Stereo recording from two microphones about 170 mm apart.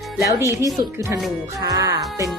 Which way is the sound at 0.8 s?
20° right (ahead or behind).